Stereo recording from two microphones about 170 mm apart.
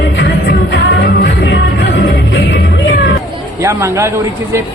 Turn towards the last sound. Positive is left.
turn(degrees=-15)  # may be behind; listen again after turning